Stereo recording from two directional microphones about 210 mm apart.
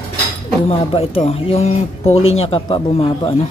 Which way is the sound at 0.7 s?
25° left (ahead or behind).